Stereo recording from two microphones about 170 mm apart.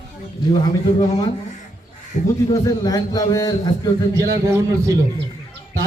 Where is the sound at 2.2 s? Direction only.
45° left (ahead or behind).